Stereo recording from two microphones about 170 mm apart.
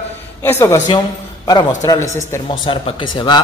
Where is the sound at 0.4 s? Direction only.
15° left (ahead or behind).